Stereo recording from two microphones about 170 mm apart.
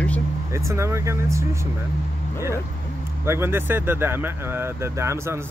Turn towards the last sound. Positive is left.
turn(degrees=-15)  # may be behind; listen again after turning